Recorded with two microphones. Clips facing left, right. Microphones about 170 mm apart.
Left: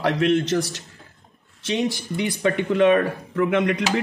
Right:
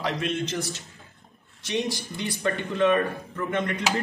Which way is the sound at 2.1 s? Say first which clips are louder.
Left 6 dB; 75° left (ahead or behind).